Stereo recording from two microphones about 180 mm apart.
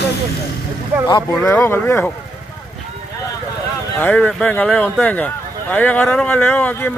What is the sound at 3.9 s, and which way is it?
Speech, 10° left (ahead or behind).